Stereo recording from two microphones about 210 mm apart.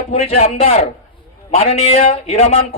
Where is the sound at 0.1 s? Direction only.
30° left (ahead or behind).